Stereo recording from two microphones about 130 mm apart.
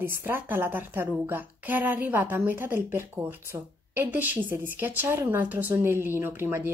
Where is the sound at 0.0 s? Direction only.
15° right (ahead or behind).